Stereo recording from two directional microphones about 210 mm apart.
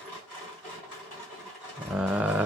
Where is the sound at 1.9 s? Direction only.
5° right (ahead or behind).